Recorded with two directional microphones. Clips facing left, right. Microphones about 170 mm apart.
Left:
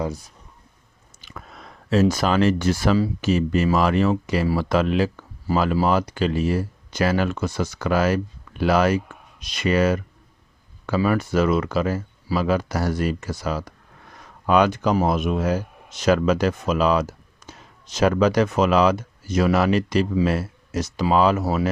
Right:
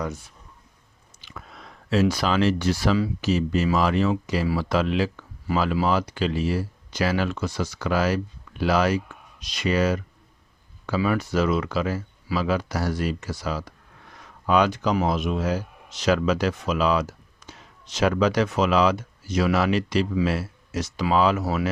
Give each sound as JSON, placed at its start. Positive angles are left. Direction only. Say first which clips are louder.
{"t": 0.0, "sound": "speech", "louder": "left 3 dB", "side_deg": 35}